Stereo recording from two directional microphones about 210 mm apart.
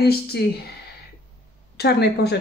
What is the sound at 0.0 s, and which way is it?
Speech, 50° left (ahead or behind).